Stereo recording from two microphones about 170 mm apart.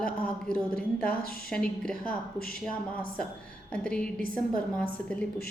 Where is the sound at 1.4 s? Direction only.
5° left (ahead or behind).